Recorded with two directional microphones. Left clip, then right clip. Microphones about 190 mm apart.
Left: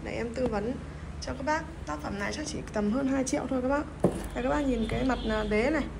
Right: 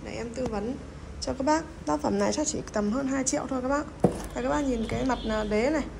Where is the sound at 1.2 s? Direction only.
35° right (ahead or behind).